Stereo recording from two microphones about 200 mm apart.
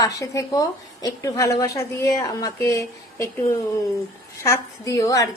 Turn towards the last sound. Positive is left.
turn(degrees=15)  # may be behind; listen again after turning